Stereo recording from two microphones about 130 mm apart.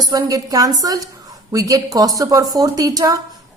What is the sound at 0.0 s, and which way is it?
A woman's voice, 30° right (ahead or behind).